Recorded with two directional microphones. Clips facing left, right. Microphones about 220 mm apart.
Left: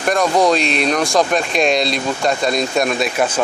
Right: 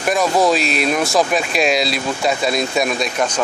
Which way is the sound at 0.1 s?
5° right (ahead or behind).